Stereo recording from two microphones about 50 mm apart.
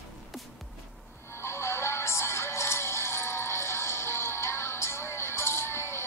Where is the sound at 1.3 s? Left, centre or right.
Left.